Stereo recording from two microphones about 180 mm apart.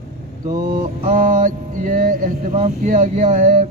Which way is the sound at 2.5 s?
40° right (ahead or behind).